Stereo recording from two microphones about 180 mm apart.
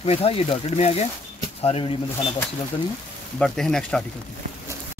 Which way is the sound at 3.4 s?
5° left (ahead or behind).